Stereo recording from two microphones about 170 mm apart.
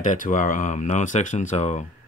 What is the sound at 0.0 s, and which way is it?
Speech, 50° left (ahead or behind).